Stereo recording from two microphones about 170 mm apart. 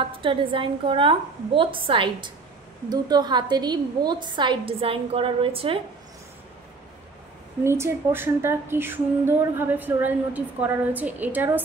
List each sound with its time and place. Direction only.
0.0 s a woman's voice: 30° right (ahead or behind)
7.6 s speech: 15° right (ahead or behind)